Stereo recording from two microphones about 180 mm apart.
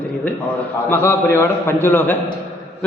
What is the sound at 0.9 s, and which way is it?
A man's voice, 10° left (ahead or behind).